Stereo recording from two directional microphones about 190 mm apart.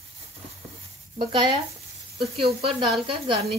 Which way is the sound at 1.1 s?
30° right (ahead or behind).